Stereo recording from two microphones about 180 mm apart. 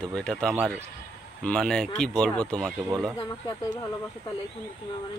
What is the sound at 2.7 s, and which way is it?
Speech, 15° right (ahead or behind).